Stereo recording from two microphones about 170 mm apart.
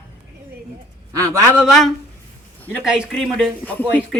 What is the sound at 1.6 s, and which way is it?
A woman's voice, centre (ahead or behind).